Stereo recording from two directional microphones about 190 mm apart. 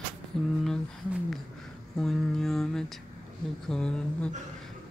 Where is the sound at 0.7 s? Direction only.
Centre (ahead or behind).